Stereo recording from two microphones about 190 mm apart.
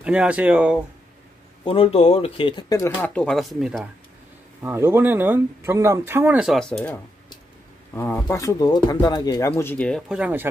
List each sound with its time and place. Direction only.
0.0 s speech: 5° right (ahead or behind)
1.6 s speech: 30° left (ahead or behind); by 3.9 s centre (ahead or behind)
4.6 s speech: 15° right (ahead or behind)
7.9 s speech: 10° left (ahead or behind); by 10.5 s 10° right (ahead or behind)